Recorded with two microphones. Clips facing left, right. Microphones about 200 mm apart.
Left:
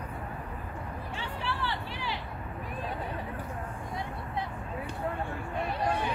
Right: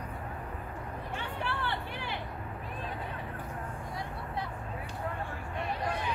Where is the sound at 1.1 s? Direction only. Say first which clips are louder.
Even; 55° right (ahead or behind).